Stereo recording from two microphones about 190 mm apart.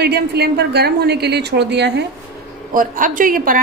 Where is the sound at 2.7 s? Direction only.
45° right (ahead or behind).